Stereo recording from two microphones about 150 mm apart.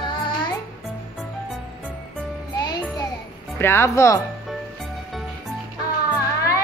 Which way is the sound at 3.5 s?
15° left (ahead or behind).